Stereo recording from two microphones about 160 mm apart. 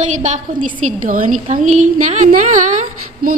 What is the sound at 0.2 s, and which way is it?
A woman's voice, 50° right (ahead or behind).